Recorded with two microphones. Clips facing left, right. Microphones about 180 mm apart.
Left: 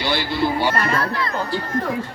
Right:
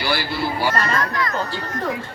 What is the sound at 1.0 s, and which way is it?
Speech, 30° left (ahead or behind).